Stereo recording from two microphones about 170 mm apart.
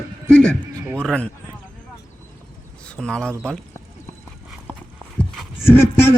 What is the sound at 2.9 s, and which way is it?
Speech, 5° left (ahead or behind).